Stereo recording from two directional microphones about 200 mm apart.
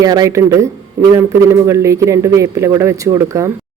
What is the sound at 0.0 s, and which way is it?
Speech, 20° right (ahead or behind).